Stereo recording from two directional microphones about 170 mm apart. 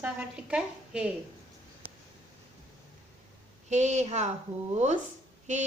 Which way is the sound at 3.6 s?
45° right (ahead or behind).